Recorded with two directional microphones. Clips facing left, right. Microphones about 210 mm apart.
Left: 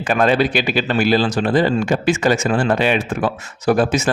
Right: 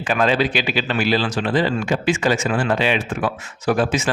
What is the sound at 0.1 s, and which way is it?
Speech, 50° left (ahead or behind).